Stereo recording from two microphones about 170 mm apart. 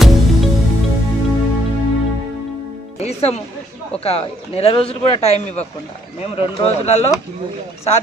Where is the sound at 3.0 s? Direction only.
40° left (ahead or behind).